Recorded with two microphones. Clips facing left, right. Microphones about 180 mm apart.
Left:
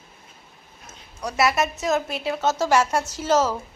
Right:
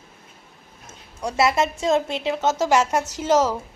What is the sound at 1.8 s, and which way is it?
A woman's voice, 25° right (ahead or behind).